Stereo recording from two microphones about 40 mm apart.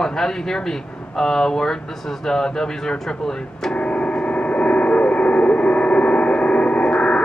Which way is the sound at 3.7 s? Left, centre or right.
Left.